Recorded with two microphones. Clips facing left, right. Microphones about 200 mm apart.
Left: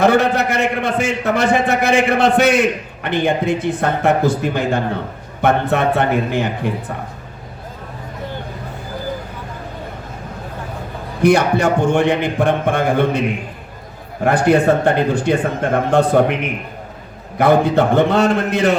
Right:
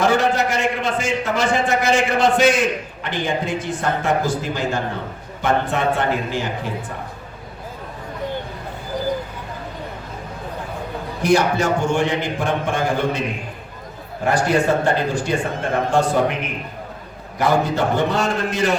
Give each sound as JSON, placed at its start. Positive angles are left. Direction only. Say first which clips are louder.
{"t": 0.0, "sound": "a man's voice", "louder": "left 4 dB", "side_deg": 60}
{"t": 11.2, "sound": "a man's voice", "louder": "left 4 dB", "side_deg": 60}
{"t": 14.3, "sound": "a man's voice", "louder": "left 5 dB", "side_deg": 60}
{"t": 17.3, "sound": "a man's voice", "louder": "left 6 dB", "side_deg": 55}